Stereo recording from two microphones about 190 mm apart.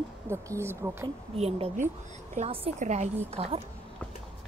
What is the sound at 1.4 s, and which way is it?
A woman's voice, 30° right (ahead or behind).